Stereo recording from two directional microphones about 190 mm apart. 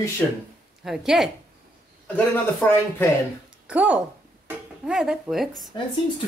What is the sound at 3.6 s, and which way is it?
Speech, 5° right (ahead or behind).